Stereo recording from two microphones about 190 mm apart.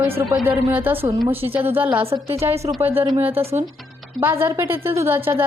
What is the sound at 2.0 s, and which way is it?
A woman's voice, 30° right (ahead or behind).